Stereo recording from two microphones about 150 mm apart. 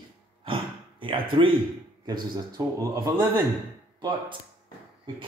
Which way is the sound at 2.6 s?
25° right (ahead or behind).